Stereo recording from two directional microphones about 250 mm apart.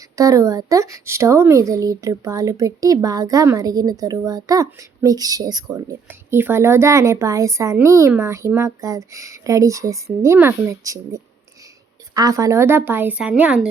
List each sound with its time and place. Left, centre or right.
0.0 s speech: centre